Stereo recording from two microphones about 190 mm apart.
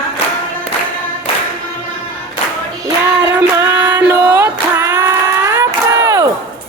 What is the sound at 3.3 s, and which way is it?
Music, 15° right (ahead or behind).